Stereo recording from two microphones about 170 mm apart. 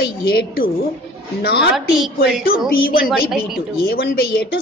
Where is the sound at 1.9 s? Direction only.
Centre (ahead or behind).